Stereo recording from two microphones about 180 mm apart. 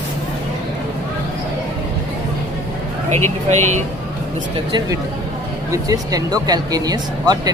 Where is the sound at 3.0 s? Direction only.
40° right (ahead or behind).